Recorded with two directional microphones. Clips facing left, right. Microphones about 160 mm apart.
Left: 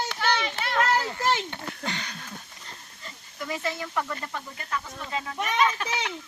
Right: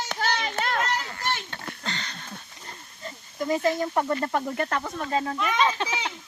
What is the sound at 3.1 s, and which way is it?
Speech, 40° right (ahead or behind).